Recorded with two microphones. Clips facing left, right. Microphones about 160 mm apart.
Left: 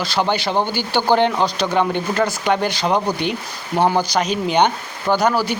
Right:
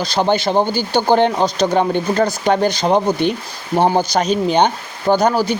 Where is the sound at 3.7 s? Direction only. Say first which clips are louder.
Right 2 dB; 20° right (ahead or behind).